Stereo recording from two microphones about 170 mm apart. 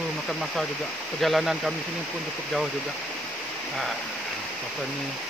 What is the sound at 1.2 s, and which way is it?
Speech, centre (ahead or behind).